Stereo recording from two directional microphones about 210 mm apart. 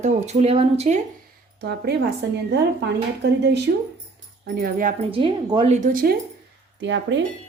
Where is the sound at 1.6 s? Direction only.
50° right (ahead or behind).